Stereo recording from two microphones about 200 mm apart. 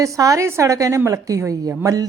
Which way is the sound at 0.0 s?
15° right (ahead or behind).